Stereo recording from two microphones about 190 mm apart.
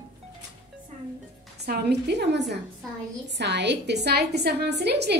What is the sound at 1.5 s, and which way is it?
A woman's voice, 60° right (ahead or behind).